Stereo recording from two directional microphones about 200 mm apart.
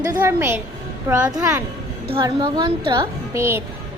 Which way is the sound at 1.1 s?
20° right (ahead or behind).